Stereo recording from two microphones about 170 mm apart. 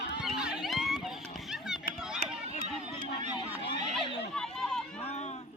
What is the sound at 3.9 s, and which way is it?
Run, 5° left (ahead or behind).